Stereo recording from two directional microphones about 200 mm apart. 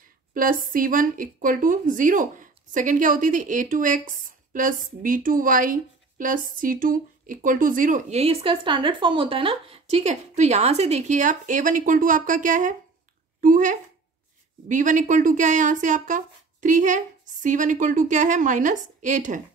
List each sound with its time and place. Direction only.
0.3 s a woman's voice: 45° right (ahead or behind)